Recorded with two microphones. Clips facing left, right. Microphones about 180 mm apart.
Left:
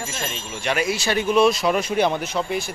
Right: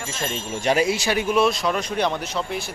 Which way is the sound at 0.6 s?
30° right (ahead or behind).